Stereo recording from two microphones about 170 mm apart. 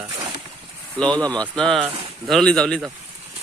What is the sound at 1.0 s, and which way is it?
A man's voice, 5° left (ahead or behind).